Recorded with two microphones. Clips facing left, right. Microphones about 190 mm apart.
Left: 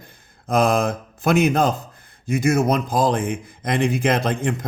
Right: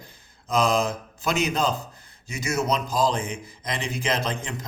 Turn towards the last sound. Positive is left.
turn(degrees=55)  # may be behind; listen again after turning